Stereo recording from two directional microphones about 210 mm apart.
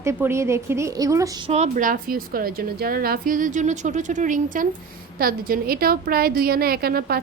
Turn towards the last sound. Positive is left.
turn(degrees=-45)  # may be behind; listen again after turning